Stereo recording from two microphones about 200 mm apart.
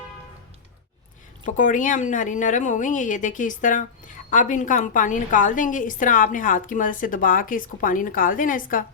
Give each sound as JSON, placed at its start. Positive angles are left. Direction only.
{"t": 1.5, "sound": "a woman's voice", "side_deg": 40}